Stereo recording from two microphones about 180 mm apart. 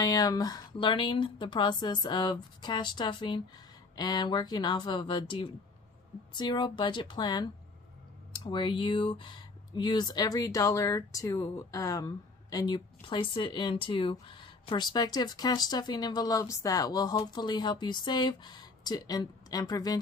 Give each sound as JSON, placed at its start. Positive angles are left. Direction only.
{"t": 0.0, "sound": "speech", "side_deg": 20}